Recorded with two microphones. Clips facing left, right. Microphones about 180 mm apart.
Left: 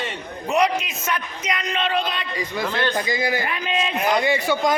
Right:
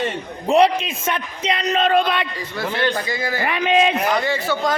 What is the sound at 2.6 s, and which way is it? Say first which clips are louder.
Speech: right 3 dB; 15° right (ahead or behind).